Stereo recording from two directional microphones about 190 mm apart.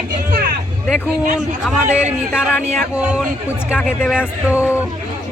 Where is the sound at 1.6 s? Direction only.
5° right (ahead or behind).